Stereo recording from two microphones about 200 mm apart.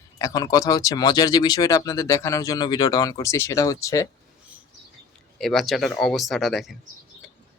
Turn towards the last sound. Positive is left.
turn(degrees=0)  # may be behind; listen again after turning